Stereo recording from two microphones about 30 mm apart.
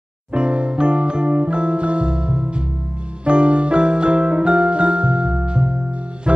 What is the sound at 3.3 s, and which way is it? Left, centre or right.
Music, right.